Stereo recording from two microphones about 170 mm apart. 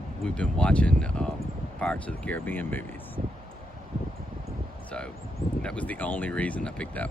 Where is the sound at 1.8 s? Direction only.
5° left (ahead or behind).